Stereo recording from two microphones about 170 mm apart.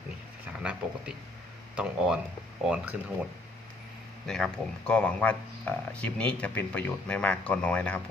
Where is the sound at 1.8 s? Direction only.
5° right (ahead or behind).